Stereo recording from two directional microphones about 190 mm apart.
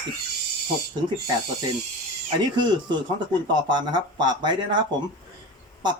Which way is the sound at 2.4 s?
25° right (ahead or behind).